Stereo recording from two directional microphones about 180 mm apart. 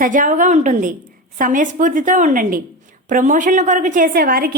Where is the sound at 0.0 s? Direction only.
45° right (ahead or behind).